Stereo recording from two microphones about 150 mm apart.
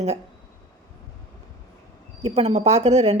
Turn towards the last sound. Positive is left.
turn(degrees=-45)  # may be behind; listen again after turning